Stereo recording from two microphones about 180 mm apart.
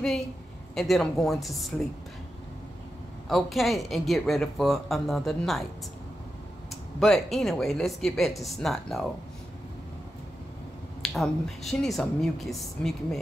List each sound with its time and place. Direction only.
0.7 s speech: centre (ahead or behind)
3.3 s speech: centre (ahead or behind)
6.7 s speech: centre (ahead or behind)
11.0 s speech: centre (ahead or behind)